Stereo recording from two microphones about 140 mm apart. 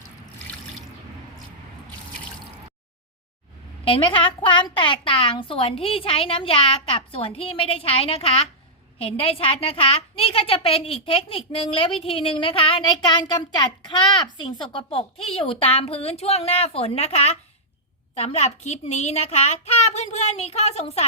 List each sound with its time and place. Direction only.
3.8 s a woman's voice: 40° left (ahead or behind)